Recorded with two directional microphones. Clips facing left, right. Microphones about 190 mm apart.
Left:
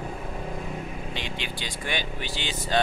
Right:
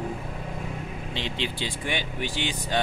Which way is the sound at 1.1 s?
25° right (ahead or behind).